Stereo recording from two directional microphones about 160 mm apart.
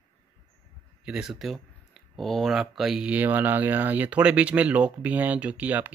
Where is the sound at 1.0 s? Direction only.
5° right (ahead or behind).